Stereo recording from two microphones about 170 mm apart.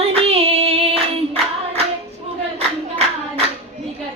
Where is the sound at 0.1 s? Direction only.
35° right (ahead or behind).